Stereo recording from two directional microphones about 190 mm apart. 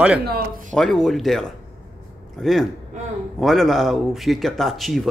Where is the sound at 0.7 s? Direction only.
Centre (ahead or behind).